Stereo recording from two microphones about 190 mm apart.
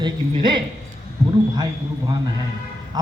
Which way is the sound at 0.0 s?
25° right (ahead or behind).